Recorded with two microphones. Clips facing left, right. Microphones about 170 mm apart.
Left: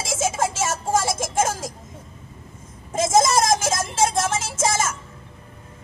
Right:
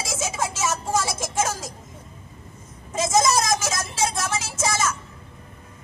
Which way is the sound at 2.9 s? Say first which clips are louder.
Left 2 dB; 50° left (ahead or behind).